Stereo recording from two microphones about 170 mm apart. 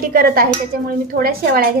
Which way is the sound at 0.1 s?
60° right (ahead or behind).